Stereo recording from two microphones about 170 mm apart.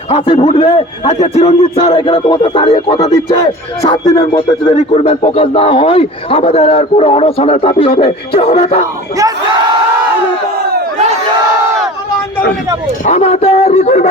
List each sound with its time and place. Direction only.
0.1 s a man's voice: 35° left (ahead or behind)
13.1 s a man's voice: 40° left (ahead or behind)